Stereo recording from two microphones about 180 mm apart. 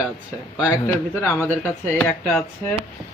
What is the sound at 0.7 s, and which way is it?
Speech, 15° left (ahead or behind).